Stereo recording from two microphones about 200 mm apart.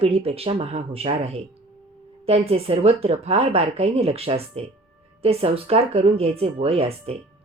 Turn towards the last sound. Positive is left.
turn(degrees=-30)  # may be behind; listen again after turning